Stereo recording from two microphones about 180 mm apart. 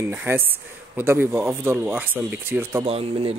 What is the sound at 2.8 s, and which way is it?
Speech, 35° right (ahead or behind).